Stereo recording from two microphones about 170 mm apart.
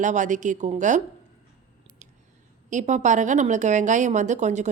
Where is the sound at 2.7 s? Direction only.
45° right (ahead or behind).